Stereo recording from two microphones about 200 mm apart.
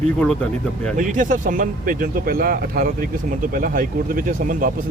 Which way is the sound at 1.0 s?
40° right (ahead or behind).